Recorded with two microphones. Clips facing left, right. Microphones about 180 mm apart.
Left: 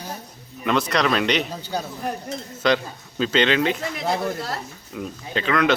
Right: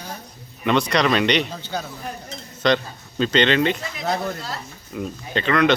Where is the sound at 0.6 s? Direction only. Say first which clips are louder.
Right 2 dB; centre (ahead or behind).